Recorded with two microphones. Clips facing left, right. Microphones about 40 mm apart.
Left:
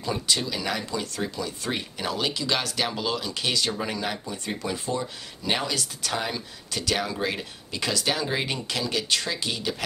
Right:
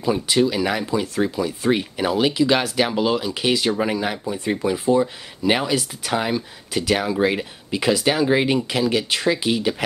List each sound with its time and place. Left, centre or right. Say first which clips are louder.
0.0 s speech: right 8 dB; centre